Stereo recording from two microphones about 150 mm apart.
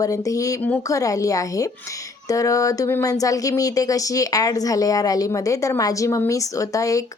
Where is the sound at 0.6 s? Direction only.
10° left (ahead or behind).